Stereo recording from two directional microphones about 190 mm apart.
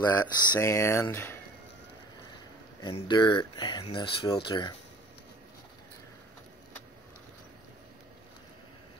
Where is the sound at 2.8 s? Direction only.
25° left (ahead or behind).